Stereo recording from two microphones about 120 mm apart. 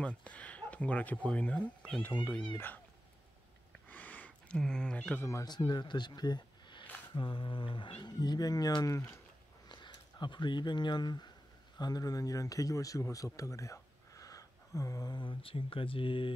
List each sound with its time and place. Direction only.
0.0 s speech: 10° left (ahead or behind)
3.9 s cat: 15° left (ahead or behind)
5.7 s speech: 40° left (ahead or behind)